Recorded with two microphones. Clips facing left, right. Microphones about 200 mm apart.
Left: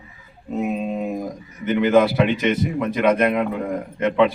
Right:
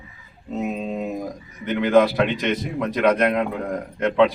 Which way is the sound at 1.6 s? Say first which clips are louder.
Left 1 dB; 5° left (ahead or behind).